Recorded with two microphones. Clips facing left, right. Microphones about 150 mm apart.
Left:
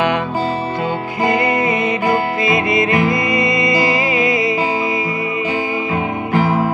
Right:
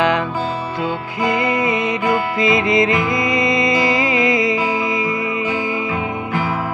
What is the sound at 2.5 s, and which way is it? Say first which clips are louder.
Music: even; 20° right (ahead or behind).